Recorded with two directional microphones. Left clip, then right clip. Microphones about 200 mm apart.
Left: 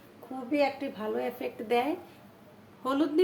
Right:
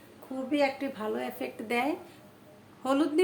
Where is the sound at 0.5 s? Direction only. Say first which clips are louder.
Even; 10° right (ahead or behind).